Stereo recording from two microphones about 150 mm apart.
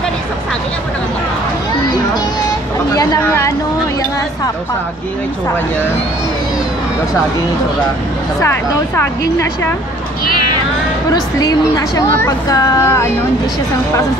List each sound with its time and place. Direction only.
2.9 s speech: 25° left (ahead or behind)
8.9 s a woman's voice: 15° left (ahead or behind)
11.1 s a woman's voice: 25° left (ahead or behind)